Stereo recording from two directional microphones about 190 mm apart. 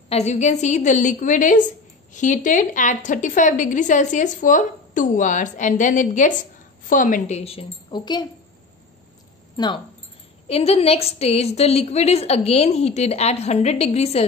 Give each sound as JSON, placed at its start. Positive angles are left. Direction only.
{"t": 0.1, "sound": "a woman's voice", "side_deg": 35}
{"t": 9.6, "sound": "speech", "side_deg": 20}
{"t": 10.5, "sound": "a woman's voice", "side_deg": 30}